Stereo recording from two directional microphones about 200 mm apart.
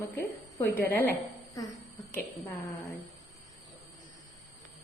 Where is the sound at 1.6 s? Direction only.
15° left (ahead or behind).